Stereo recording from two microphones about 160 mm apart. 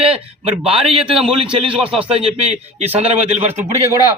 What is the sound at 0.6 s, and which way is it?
Speech, 35° right (ahead or behind).